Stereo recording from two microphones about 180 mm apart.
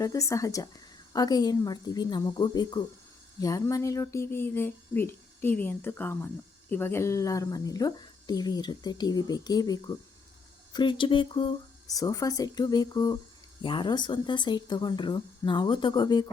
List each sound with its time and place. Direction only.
0.0 s speech: 15° left (ahead or behind)